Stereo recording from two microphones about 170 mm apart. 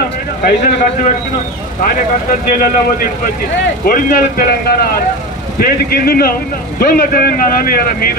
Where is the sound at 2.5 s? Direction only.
55° left (ahead or behind).